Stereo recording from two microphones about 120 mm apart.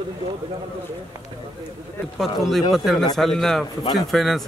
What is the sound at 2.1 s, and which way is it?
A man's voice, centre (ahead or behind).